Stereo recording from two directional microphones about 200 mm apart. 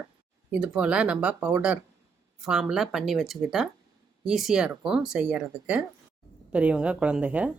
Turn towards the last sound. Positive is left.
turn(degrees=-5)  # may be behind; listen again after turning